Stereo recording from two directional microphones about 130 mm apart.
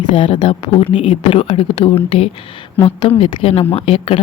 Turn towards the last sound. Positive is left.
turn(degrees=50)  # may be behind; listen again after turning